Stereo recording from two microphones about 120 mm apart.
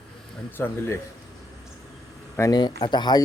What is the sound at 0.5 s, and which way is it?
Speech, 20° left (ahead or behind).